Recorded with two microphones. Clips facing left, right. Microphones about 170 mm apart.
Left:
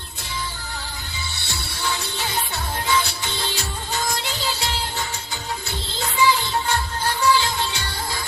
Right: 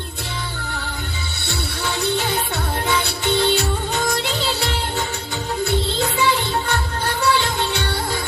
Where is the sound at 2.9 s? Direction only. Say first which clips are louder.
Right 3 dB; 60° right (ahead or behind).